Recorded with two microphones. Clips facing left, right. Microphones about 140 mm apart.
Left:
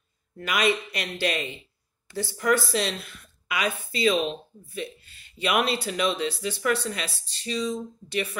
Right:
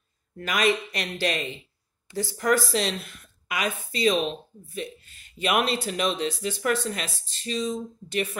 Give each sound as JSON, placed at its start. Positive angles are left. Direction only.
{"t": 0.4, "sound": "a woman's voice", "side_deg": -40}